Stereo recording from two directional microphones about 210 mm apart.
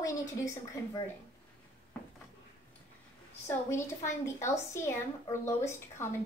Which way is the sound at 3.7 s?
15° left (ahead or behind).